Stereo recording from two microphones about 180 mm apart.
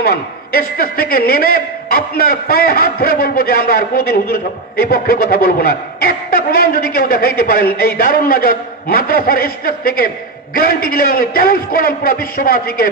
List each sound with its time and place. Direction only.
0.7 s a man's voice: 55° left (ahead or behind)